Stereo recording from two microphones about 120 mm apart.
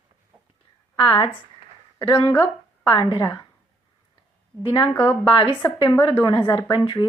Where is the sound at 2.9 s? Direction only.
40° left (ahead or behind).